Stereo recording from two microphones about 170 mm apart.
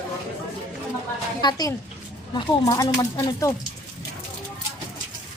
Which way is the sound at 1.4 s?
20° left (ahead or behind).